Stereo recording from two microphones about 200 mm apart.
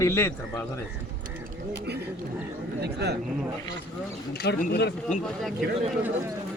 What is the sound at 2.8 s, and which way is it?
Speech, 55° right (ahead or behind).